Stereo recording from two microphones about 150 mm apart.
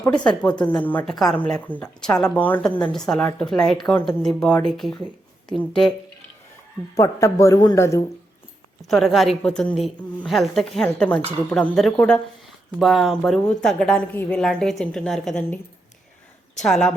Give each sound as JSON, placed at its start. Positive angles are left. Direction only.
{"t": 0.6, "sound": "a woman's voice", "side_deg": 10}
{"t": 6.9, "sound": "speech", "side_deg": 20}
{"t": 8.9, "sound": "a woman's voice", "side_deg": 0}
{"t": 16.6, "sound": "a woman's voice", "side_deg": 5}